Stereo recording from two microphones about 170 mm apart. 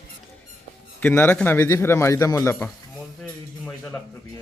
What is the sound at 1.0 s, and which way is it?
A man's voice, 10° left (ahead or behind).